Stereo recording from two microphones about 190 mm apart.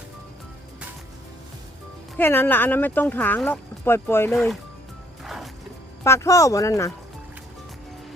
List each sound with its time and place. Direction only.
2.1 s speech: 10° left (ahead or behind)
5.2 s music: centre (ahead or behind)
6.0 s speech: 15° left (ahead or behind)